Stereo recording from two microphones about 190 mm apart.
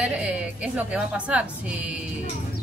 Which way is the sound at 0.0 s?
5° right (ahead or behind).